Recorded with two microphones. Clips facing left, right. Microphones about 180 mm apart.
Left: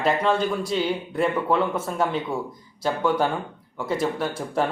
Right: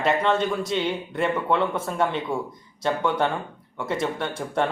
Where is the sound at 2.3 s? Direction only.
25° right (ahead or behind).